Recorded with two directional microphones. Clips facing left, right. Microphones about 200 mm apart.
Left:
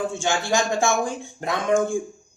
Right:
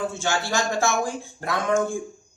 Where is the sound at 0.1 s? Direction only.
15° left (ahead or behind).